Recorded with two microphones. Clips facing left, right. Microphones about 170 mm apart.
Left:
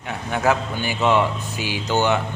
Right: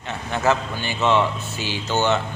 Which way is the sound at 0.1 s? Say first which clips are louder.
Left 1 dB; 10° left (ahead or behind).